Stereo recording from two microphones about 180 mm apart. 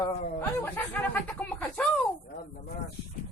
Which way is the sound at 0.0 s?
15° left (ahead or behind).